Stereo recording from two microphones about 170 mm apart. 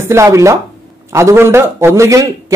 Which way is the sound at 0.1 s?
15° right (ahead or behind).